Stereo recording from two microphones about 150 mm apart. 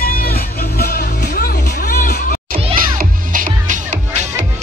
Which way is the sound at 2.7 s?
70° right (ahead or behind).